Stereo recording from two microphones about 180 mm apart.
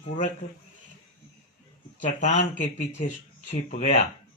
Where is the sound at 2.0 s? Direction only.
45° left (ahead or behind).